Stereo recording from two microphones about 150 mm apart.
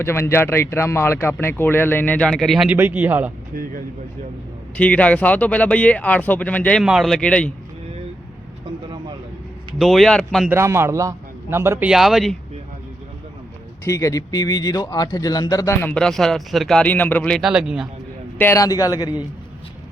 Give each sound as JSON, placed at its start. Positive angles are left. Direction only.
{"t": 0.0, "sound": "speech", "side_deg": 15}
{"t": 3.5, "sound": "speech", "side_deg": -70}
{"t": 4.8, "sound": "speech", "side_deg": 10}
{"t": 6.8, "sound": "speech", "side_deg": 0}
{"t": 9.7, "sound": "speech", "side_deg": 0}
{"t": 10.5, "sound": "a man's voice", "side_deg": -15}
{"t": 11.9, "sound": "speech", "side_deg": 0}
{"t": 13.8, "sound": "speech", "side_deg": 20}
{"t": 18.3, "sound": "a man's voice", "side_deg": 15}